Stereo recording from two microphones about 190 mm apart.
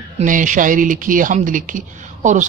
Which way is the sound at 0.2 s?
40° right (ahead or behind).